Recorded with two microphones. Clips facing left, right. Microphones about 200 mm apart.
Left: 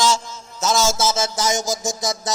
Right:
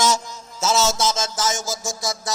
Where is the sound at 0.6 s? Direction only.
5° right (ahead or behind); by 2.3 s 20° left (ahead or behind).